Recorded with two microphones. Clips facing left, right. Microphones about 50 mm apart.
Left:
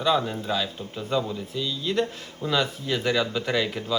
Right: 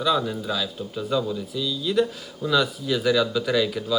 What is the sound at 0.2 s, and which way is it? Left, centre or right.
Speech, left.